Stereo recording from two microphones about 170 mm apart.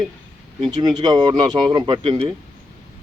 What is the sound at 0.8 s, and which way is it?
A man's voice, 25° right (ahead or behind).